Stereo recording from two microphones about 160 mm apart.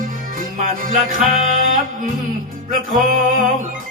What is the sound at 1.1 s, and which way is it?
Music, 55° right (ahead or behind).